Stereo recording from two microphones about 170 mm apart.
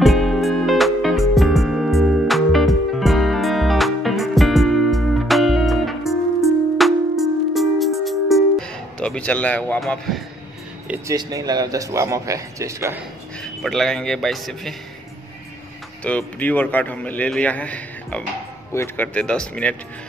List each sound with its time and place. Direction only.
0.0 s music: centre (ahead or behind)
11.1 s a man's voice: 20° right (ahead or behind)
13.4 s speech: centre (ahead or behind)
16.0 s a man's voice: 10° left (ahead or behind)